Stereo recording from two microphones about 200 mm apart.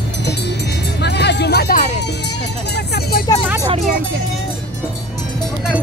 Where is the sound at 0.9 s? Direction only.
55° left (ahead or behind).